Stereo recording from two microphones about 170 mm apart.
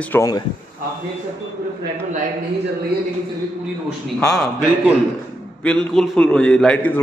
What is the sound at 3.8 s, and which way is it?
Speech, centre (ahead or behind).